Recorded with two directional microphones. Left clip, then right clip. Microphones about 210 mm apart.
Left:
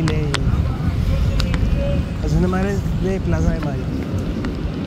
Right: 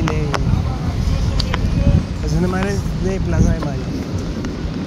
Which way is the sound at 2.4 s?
10° left (ahead or behind).